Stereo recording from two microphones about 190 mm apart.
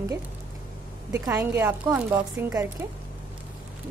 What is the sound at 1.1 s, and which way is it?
Speech, 15° right (ahead or behind).